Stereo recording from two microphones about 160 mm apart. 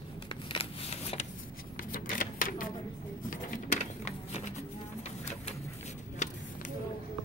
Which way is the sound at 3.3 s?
55° left (ahead or behind).